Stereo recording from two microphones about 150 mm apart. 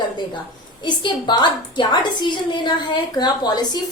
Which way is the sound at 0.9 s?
30° left (ahead or behind).